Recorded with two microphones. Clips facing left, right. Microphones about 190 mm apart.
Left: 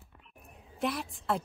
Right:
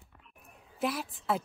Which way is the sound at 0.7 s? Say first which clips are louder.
Even; centre (ahead or behind).